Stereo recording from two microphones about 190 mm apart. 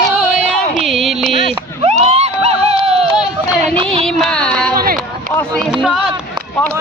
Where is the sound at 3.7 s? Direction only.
30° right (ahead or behind).